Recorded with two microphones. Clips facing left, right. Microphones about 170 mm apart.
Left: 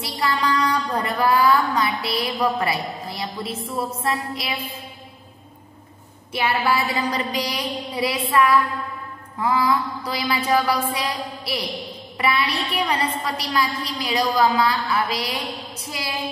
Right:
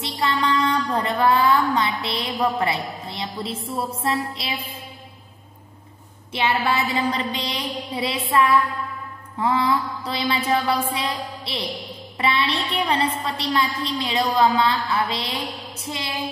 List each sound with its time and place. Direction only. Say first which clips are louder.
0.0 s a sound: even; 25° right (ahead or behind)
0.9 s a woman's voice: right 1 dB; 25° right (ahead or behind)
6.3 s a woman's voice: even; 25° right (ahead or behind)